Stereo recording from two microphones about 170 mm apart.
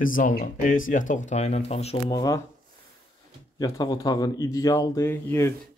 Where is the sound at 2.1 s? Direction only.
20° left (ahead or behind).